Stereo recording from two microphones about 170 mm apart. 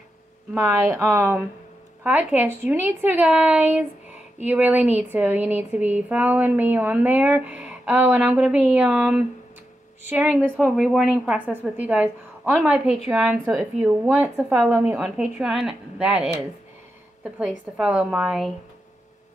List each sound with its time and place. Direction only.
0.6 s a woman's voice: 15° right (ahead or behind)